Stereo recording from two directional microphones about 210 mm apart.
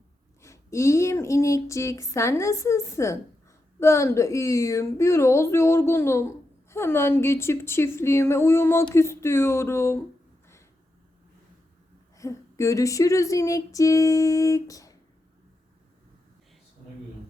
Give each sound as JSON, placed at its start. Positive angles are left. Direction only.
{"t": 0.4, "sound": "a woman's voice", "side_deg": 15}
{"t": 12.1, "sound": "a woman's voice", "side_deg": 15}